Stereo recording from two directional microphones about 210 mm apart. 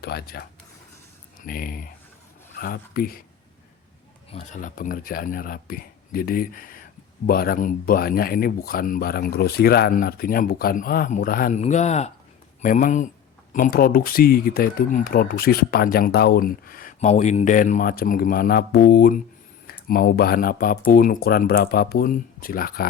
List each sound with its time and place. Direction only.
0.0 s speech: 50° left (ahead or behind)
4.3 s speech: 30° left (ahead or behind)